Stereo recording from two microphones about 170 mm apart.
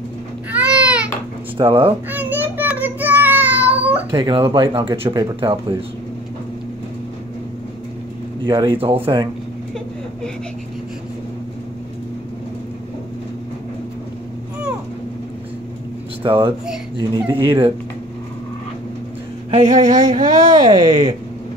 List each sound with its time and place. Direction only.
0.5 s a sound: 5° right (ahead or behind)
1.6 s speech: 30° right (ahead or behind)
1.9 s child singing: 10° right (ahead or behind)
4.1 s speech: 30° right (ahead or behind)
8.5 s speech: 30° right (ahead or behind)
16.2 s speech: 30° right (ahead or behind)
19.5 s speech: 45° right (ahead or behind)